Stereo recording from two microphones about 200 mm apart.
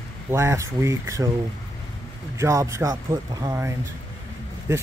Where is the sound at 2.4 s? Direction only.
15° right (ahead or behind).